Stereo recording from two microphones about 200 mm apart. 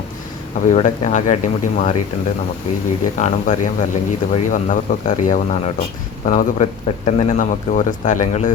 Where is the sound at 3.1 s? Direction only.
35° left (ahead or behind).